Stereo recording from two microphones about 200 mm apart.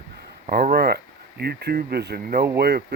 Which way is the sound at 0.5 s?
50° right (ahead or behind).